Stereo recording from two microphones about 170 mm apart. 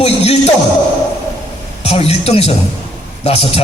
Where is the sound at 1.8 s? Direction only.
35° left (ahead or behind).